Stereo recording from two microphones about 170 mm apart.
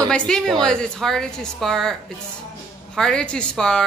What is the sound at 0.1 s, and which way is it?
A woman's voice, 5° left (ahead or behind).